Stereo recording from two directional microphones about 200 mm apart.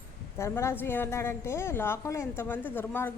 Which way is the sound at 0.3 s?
15° left (ahead or behind).